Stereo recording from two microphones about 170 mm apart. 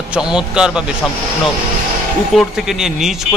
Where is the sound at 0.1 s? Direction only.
5° right (ahead or behind).